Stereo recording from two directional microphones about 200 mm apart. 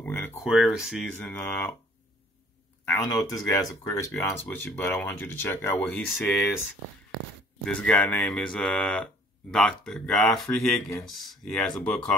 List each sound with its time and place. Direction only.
0.0 s a sound: 10° left (ahead or behind)
0.4 s speech: centre (ahead or behind)
2.8 s speech: 15° left (ahead or behind)
7.6 s speech: 5° left (ahead or behind)